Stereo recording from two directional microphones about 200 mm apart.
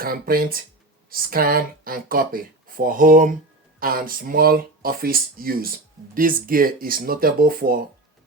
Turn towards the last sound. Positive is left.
turn(degrees=-45)  # may be behind; listen again after turning